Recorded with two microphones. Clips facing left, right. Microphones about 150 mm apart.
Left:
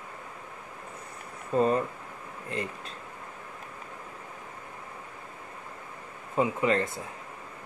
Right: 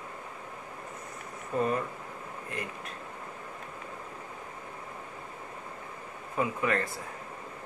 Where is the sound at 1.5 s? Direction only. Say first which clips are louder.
Left 5 dB; 25° left (ahead or behind).